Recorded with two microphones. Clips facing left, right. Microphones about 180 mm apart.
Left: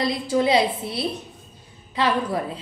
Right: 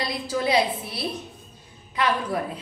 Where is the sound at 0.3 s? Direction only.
25° left (ahead or behind).